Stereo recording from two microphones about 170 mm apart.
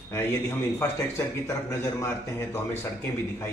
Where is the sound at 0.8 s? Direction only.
20° left (ahead or behind).